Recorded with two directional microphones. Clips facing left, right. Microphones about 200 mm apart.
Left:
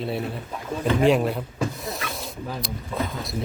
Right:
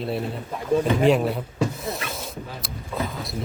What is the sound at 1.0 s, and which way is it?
Snake, centre (ahead or behind).